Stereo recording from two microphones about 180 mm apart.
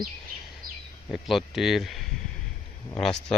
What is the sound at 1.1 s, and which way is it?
Speech, centre (ahead or behind).